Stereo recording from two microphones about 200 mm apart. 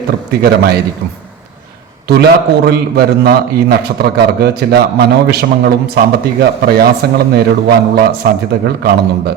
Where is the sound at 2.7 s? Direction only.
50° right (ahead or behind).